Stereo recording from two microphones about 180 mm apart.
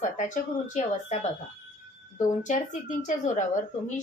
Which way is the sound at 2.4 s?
45° left (ahead or behind).